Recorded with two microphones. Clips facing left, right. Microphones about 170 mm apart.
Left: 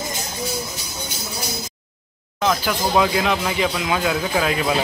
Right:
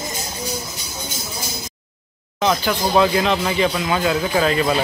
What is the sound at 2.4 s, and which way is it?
Speech, 5° left (ahead or behind).